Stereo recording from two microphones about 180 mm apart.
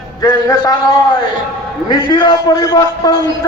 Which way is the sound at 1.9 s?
25° left (ahead or behind).